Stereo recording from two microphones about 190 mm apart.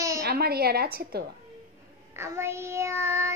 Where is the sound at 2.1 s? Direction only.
15° right (ahead or behind).